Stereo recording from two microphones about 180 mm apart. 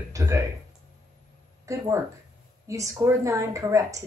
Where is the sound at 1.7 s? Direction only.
15° right (ahead or behind).